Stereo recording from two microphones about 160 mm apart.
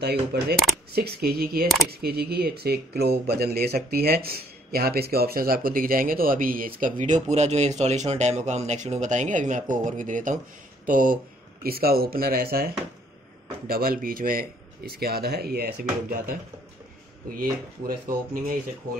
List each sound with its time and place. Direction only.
0.0 s a man's voice: 85° right; by 11.1 s 60° right (ahead or behind)
11.6 s a man's voice: 70° right (ahead or behind)